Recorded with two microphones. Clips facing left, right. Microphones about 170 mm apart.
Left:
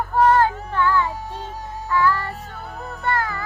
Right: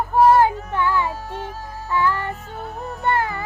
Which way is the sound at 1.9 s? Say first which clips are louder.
Left 1 dB; 20° right (ahead or behind).